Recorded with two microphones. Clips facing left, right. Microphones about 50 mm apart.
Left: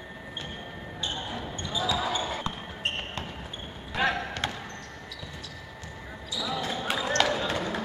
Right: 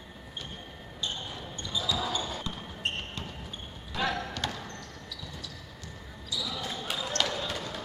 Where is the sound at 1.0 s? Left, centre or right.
Left.